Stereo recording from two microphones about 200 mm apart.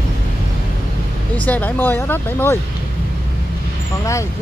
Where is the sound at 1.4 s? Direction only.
10° left (ahead or behind).